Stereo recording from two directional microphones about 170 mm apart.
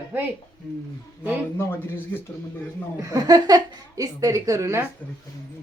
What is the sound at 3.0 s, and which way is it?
A woman's voice, 20° right (ahead or behind).